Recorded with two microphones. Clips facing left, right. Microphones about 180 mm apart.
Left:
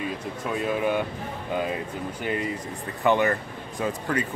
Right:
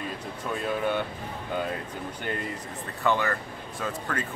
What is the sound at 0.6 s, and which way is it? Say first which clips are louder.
Speech: left 3 dB; 10° left (ahead or behind).